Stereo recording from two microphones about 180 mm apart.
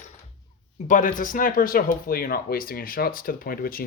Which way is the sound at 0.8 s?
45° left (ahead or behind).